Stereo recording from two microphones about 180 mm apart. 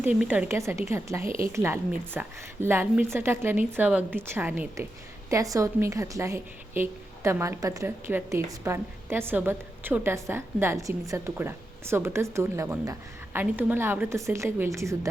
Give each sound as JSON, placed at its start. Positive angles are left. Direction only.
{"t": 0.0, "sound": "a woman's voice", "side_deg": -5}